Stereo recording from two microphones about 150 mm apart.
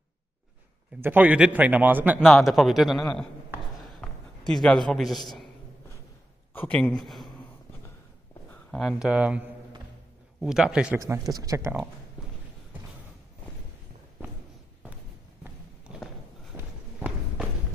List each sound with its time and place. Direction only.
1.0 s a man's voice: 10° right (ahead or behind)
2.2 s a man's voice: centre (ahead or behind)
4.5 s a man's voice: 5° left (ahead or behind)
6.5 s speech: 10° left (ahead or behind)
8.7 s a man's voice: centre (ahead or behind)
10.4 s a man's voice: 5° right (ahead or behind)
11.0 s speech: 25° right (ahead or behind)
15.4 s walk: 5° right (ahead or behind)
16.5 s walk: 20° right (ahead or behind)